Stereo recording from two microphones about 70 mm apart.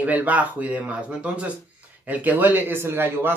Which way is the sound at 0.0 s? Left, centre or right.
Right.